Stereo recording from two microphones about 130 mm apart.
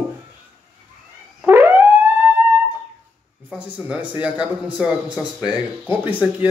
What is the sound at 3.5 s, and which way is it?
Speech, 10° right (ahead or behind).